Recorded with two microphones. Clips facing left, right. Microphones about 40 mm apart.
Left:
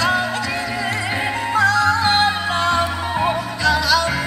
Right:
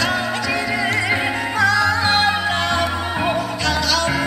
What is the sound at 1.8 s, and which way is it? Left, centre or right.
Music, centre.